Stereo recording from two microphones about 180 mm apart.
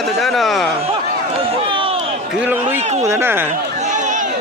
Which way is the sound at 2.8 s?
40° right (ahead or behind).